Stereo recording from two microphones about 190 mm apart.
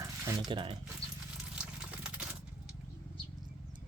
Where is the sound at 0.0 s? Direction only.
20° right (ahead or behind).